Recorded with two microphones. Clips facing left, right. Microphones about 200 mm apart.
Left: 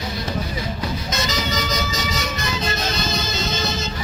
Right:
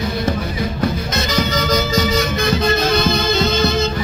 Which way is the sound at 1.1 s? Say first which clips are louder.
Right 5 dB; 55° right (ahead or behind).